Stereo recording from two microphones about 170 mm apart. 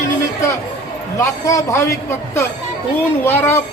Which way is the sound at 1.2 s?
15° left (ahead or behind).